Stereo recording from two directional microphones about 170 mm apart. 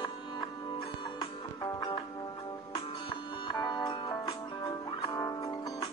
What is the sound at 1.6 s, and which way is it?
Music, 25° left (ahead or behind).